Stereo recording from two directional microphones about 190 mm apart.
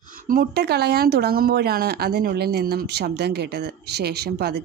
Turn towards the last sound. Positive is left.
turn(degrees=-60)  # may be behind; listen again after turning